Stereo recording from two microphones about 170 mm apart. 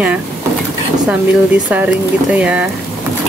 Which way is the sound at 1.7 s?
10° right (ahead or behind).